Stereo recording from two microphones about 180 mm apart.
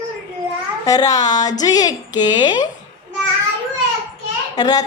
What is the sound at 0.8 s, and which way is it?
A woman's voice, 20° left (ahead or behind).